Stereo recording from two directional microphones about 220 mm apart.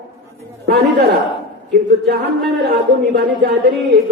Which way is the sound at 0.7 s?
45° right (ahead or behind).